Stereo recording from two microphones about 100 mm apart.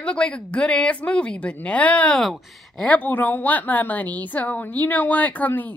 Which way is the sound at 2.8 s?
15° left (ahead or behind).